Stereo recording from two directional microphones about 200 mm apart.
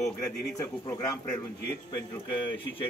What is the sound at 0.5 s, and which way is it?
Speech, 15° left (ahead or behind).